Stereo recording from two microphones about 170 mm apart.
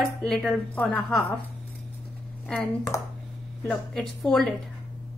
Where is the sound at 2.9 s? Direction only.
20° left (ahead or behind).